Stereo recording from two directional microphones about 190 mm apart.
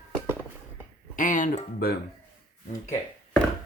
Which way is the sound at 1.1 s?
45° left (ahead or behind).